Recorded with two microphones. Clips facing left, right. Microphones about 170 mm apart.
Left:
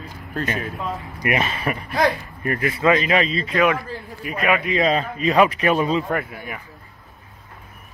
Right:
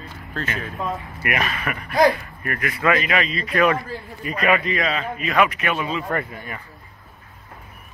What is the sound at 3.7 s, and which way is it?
A man's voice, 5° left (ahead or behind).